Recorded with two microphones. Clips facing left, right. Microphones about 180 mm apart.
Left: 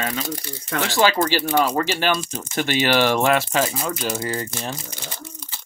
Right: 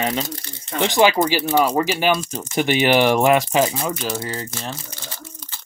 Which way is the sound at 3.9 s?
Centre (ahead or behind).